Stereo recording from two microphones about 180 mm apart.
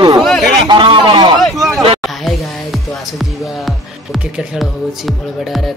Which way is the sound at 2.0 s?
Centre (ahead or behind).